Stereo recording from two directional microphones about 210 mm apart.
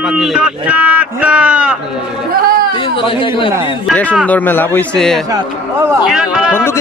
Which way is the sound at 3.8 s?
5° left (ahead or behind).